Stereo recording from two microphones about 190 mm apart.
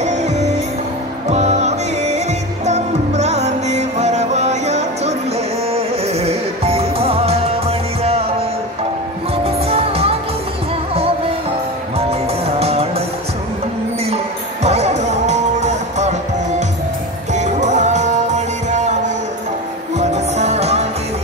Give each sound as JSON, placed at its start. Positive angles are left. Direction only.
{"t": 0.0, "sound": "music", "side_deg": -35}
{"t": 9.4, "sound": "music", "side_deg": -30}
{"t": 12.0, "sound": "music", "side_deg": -30}
{"t": 14.1, "sound": "music", "side_deg": -35}